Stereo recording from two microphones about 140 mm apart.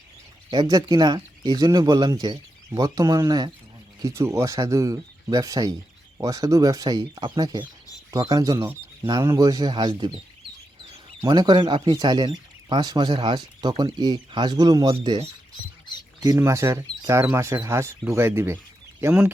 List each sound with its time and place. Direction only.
0.5 s speech: 30° right (ahead or behind)
11.2 s speech: 30° right (ahead or behind)
16.2 s speech: 25° right (ahead or behind)